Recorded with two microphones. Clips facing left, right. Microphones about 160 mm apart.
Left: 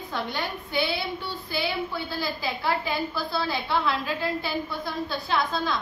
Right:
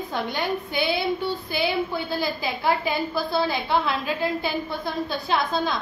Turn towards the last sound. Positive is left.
turn(degrees=-15)  # may be behind; listen again after turning